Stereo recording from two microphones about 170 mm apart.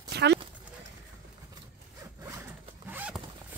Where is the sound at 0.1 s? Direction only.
80° right.